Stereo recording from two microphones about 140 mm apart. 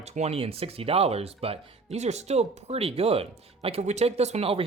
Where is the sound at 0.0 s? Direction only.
50° right (ahead or behind).